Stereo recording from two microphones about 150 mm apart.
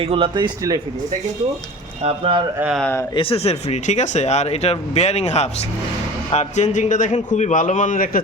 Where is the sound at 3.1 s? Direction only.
35° left (ahead or behind).